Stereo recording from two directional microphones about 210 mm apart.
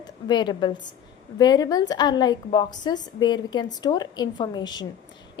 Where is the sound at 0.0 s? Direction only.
20° left (ahead or behind).